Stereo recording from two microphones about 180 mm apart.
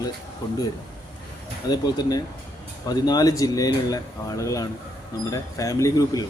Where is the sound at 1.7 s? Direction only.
25° left (ahead or behind).